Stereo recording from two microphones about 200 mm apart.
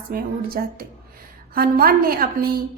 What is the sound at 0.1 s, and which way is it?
A woman's voice, 50° right (ahead or behind).